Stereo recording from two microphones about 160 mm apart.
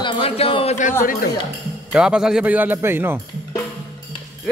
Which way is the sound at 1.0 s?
60° left (ahead or behind).